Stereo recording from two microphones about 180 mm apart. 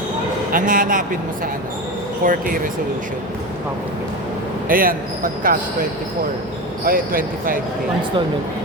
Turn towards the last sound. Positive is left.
turn(degrees=-50)  # may be behind; listen again after turning